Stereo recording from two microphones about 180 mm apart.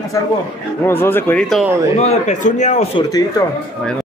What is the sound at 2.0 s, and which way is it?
Speech, 40° left (ahead or behind).